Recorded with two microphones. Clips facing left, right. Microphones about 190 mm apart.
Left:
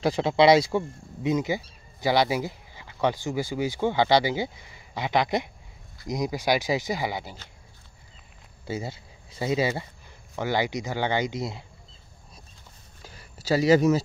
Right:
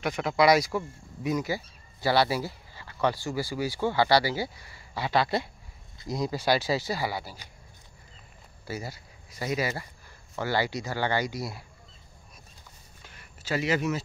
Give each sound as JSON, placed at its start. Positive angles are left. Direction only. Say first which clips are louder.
{"t": 0.0, "sound": "speech", "louder": "left 4 dB", "side_deg": 30}
{"t": 8.6, "sound": "speech", "louder": "left 4 dB", "side_deg": 25}
{"t": 13.0, "sound": "a sound", "louder": "left 6 dB", "side_deg": 35}